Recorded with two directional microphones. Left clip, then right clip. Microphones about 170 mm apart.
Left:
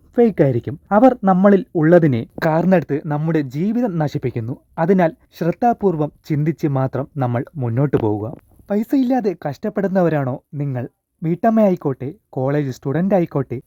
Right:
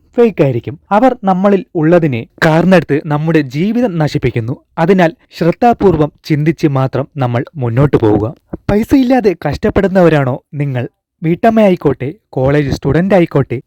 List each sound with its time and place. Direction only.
0.4 s speech: 20° right (ahead or behind)
2.4 s speech: 45° right (ahead or behind)